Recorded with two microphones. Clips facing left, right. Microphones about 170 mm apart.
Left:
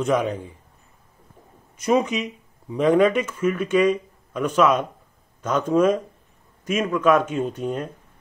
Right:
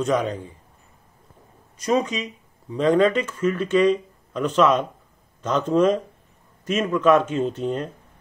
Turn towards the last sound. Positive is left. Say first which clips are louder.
# right 1 dB
turn(degrees=10)  # may be behind; listen again after turning